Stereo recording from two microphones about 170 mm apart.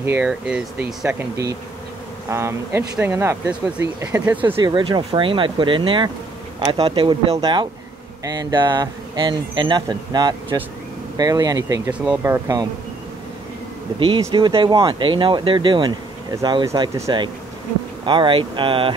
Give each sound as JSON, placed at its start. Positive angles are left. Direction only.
{"t": 0.0, "sound": "speech", "side_deg": -10}
{"t": 4.7, "sound": "speech", "side_deg": -25}
{"t": 13.9, "sound": "speech", "side_deg": -30}